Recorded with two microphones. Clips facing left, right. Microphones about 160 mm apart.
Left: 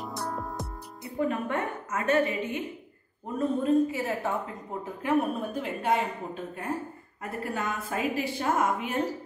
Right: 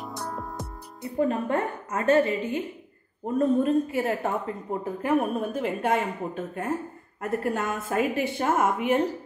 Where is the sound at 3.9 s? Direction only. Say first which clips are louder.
Right 4 dB; 55° right (ahead or behind).